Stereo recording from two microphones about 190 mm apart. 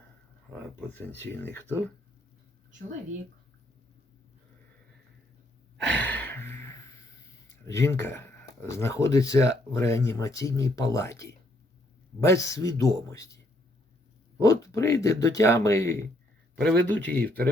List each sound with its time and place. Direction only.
0.5 s speech: 10° left (ahead or behind)
5.9 s gasp: 10° left (ahead or behind)
7.7 s speech: 15° left (ahead or behind)
14.3 s speech: 15° left (ahead or behind)